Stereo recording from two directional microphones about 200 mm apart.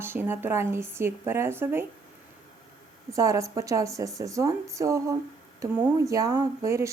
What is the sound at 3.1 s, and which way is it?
A woman's voice, 15° right (ahead or behind).